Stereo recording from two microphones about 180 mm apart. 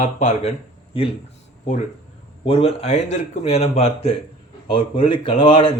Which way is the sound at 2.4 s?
35° left (ahead or behind).